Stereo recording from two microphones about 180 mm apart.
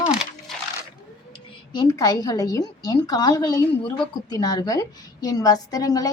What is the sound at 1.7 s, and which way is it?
A woman's voice, 20° left (ahead or behind).